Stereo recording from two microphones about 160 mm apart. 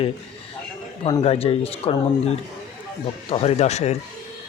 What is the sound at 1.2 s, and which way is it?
Speech, 35° left (ahead or behind).